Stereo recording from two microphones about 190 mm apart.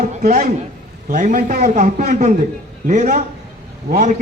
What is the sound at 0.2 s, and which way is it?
A man's voice, 50° right (ahead or behind).